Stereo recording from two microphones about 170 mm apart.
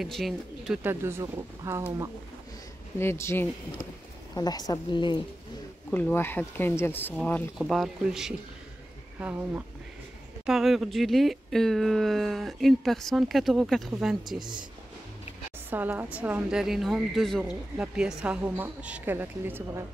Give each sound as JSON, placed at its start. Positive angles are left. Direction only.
{"t": 0.0, "sound": "speech", "side_deg": 0}
{"t": 0.8, "sound": "a woman's voice", "side_deg": -15}
{"t": 3.0, "sound": "a woman's voice", "side_deg": 15}
{"t": 5.9, "sound": "speech", "side_deg": 10}
{"t": 7.5, "sound": "a woman's voice", "side_deg": 0}
{"t": 14.4, "sound": "speech", "side_deg": -25}
{"t": 15.7, "sound": "a woman's voice", "side_deg": -10}